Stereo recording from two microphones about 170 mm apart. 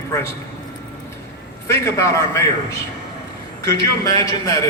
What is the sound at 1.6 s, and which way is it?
Speech, 15° left (ahead or behind).